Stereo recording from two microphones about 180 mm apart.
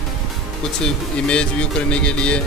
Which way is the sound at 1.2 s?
5° left (ahead or behind).